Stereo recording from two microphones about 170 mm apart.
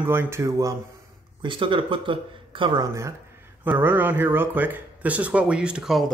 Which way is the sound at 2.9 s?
15° right (ahead or behind).